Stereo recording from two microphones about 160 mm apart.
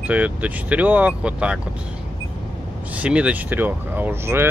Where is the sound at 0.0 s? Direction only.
10° right (ahead or behind).